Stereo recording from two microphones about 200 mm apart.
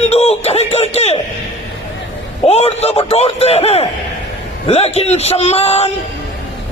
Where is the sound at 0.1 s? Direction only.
30° left (ahead or behind).